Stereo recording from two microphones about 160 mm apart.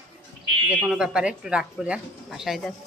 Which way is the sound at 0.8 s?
5° right (ahead or behind).